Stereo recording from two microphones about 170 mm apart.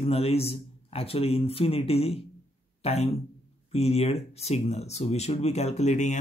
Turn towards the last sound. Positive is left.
turn(degrees=45)  # may be behind; listen again after turning